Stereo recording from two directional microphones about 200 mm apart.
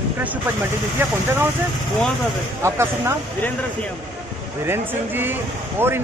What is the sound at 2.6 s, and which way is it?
Speech, 15° right (ahead or behind).